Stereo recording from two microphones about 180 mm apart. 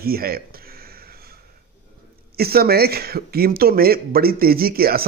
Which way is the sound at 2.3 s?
60° right (ahead or behind).